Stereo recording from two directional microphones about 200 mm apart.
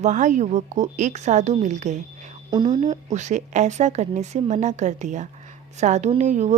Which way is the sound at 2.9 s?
35° right (ahead or behind).